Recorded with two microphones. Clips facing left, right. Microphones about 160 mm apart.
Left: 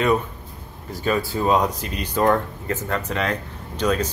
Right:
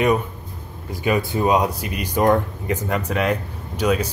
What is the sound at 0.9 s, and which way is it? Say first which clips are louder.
Speech: right 2 dB; 15° right (ahead or behind).